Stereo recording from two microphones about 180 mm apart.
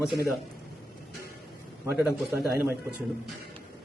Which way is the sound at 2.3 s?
15° right (ahead or behind).